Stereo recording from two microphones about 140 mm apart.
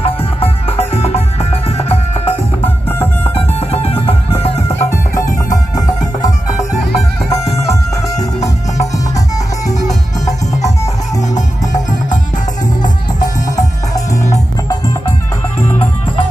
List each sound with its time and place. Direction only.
0.0 s music: 45° left (ahead or behind)
3.3 s music: 45° left (ahead or behind)
7.2 s music: 20° left (ahead or behind)
13.2 s music: 25° left (ahead or behind)